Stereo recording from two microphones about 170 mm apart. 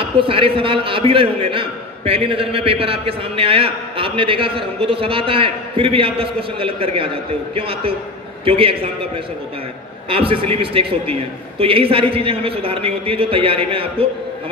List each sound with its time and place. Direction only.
0.0 s a man's voice: 30° right (ahead or behind)